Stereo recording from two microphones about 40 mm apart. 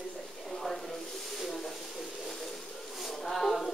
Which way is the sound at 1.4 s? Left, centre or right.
Centre.